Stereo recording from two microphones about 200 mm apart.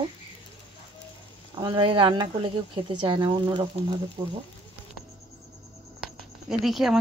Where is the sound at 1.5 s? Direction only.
25° right (ahead or behind).